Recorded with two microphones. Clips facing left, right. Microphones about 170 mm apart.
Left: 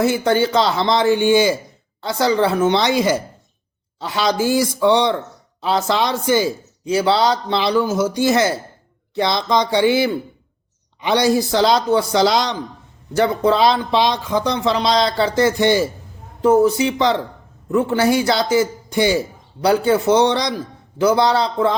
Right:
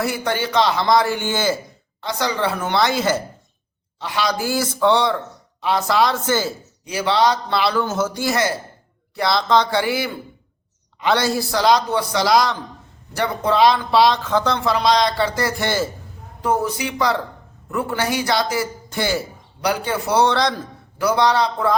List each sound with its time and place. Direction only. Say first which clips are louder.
0.0 s speech: left 6 dB; 25° left (ahead or behind)
2.0 s speech: left 5 dB; 30° left (ahead or behind); by 3.2 s 15° left (ahead or behind)
4.0 s speech: left 4 dB; 25° left (ahead or behind)
6.8 s speech: left 2 dB; 25° left (ahead or behind)
21.0 s speech: left 2 dB; 25° left (ahead or behind)